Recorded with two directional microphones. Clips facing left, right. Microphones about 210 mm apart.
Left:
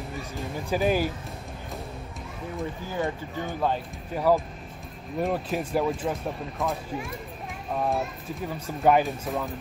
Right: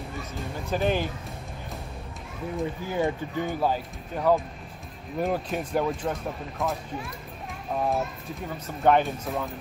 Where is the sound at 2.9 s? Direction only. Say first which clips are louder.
Right 4 dB; 15° right (ahead or behind).